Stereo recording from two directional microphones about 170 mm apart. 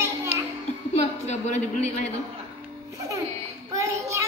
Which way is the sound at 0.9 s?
40° left (ahead or behind).